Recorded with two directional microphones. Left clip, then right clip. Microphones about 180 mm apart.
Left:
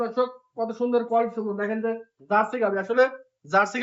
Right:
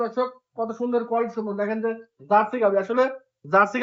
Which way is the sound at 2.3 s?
35° right (ahead or behind).